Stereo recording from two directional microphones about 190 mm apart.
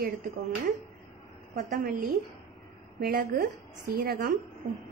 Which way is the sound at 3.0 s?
55° right (ahead or behind).